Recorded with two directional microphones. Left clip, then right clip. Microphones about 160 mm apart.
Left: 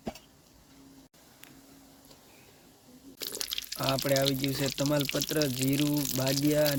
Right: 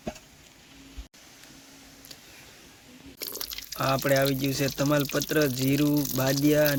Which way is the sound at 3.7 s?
Centre (ahead or behind).